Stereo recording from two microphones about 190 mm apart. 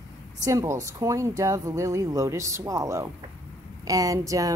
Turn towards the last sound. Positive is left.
turn(degrees=-15)  # may be behind; listen again after turning